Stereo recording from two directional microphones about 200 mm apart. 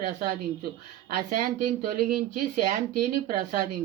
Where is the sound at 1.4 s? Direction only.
40° right (ahead or behind).